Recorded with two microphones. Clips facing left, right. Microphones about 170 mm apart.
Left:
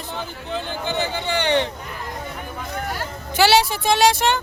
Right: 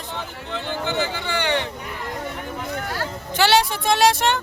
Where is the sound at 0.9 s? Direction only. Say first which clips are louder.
Left 2 dB; 20° left (ahead or behind).